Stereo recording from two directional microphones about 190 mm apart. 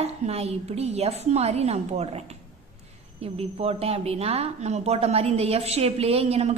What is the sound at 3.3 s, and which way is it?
A woman's voice, 30° right (ahead or behind).